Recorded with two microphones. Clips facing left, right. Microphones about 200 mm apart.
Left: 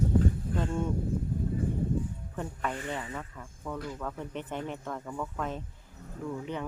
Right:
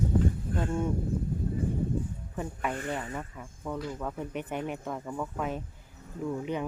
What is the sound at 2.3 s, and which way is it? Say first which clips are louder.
Speech: right 2 dB; 10° right (ahead or behind).